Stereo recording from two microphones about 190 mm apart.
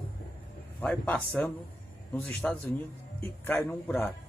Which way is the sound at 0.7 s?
5° left (ahead or behind).